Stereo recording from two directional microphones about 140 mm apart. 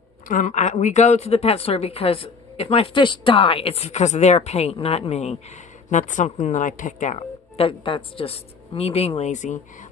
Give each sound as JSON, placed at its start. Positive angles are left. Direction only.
{"t": 0.3, "sound": "a woman's voice", "side_deg": 60}
{"t": 5.9, "sound": "a woman's voice", "side_deg": 60}
{"t": 7.5, "sound": "a woman's voice", "side_deg": 40}